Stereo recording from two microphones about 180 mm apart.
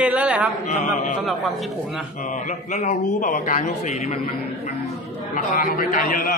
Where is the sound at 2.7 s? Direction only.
40° left (ahead or behind).